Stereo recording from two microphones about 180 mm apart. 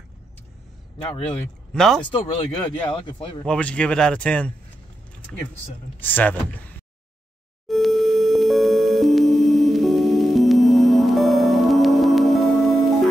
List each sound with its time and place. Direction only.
1.7 s speech: centre (ahead or behind)
2.0 s speech: 30° left (ahead or behind)
3.4 s speech: 5° left (ahead or behind)
5.9 s speech: 10° left (ahead or behind)
7.6 s music: centre (ahead or behind)